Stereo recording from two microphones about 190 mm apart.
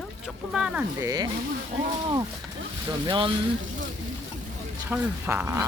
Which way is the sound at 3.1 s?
25° right (ahead or behind).